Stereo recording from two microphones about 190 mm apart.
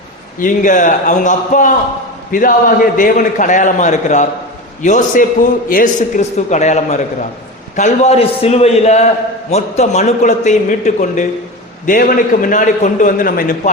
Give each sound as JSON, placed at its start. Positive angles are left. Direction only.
{"t": 0.3, "sound": "a man's voice", "side_deg": 45}